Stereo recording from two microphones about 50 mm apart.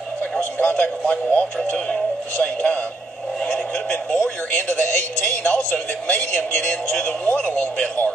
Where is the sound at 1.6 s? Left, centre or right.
Left.